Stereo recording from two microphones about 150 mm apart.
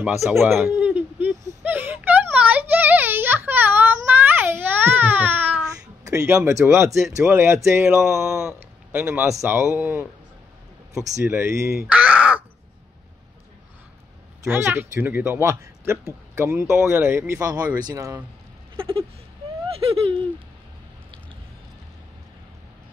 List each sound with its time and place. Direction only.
0.0 s speech: centre (ahead or behind)
0.4 s a sound: 15° right (ahead or behind)
6.0 s speech: 20° right (ahead or behind)
11.9 s crow: 10° right (ahead or behind)
14.5 s speech: 15° right (ahead or behind)
18.8 s a sound: 35° right (ahead or behind)